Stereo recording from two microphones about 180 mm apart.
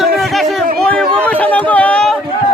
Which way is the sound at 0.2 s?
Centre (ahead or behind).